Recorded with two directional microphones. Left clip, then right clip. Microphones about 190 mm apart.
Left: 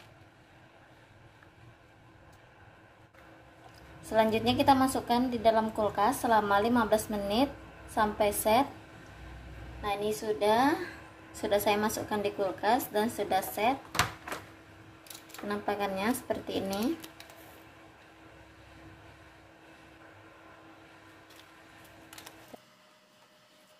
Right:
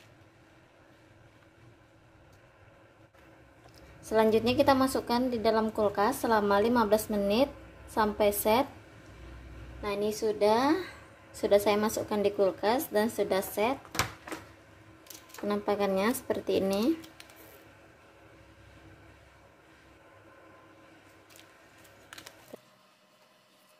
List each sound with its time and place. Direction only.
4.1 s a woman's voice: 40° right (ahead or behind)
9.8 s a woman's voice: 40° right (ahead or behind)
15.4 s a woman's voice: 40° right (ahead or behind)